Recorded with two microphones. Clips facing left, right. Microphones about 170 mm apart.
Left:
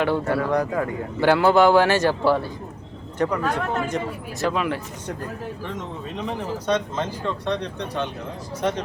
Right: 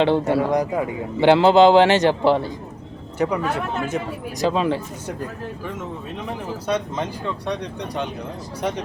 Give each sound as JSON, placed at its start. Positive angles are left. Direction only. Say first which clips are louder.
{"t": 0.0, "sound": "speech", "louder": "right 4 dB", "side_deg": -25}
{"t": 3.2, "sound": "speech", "louder": "right 1 dB", "side_deg": -10}
{"t": 4.5, "sound": "speech", "louder": "right 5 dB", "side_deg": -25}
{"t": 6.7, "sound": "speech", "louder": "even", "side_deg": -10}